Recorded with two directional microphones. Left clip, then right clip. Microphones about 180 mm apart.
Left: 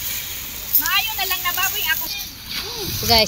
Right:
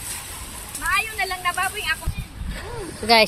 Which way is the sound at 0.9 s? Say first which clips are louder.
Left 1 dB; 55° left (ahead or behind).